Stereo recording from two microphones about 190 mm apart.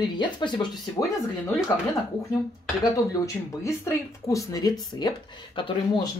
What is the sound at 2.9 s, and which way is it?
Speech, 15° left (ahead or behind).